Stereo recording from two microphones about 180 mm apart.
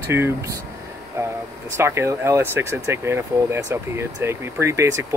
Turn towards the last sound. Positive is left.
turn(degrees=-15)  # may be behind; listen again after turning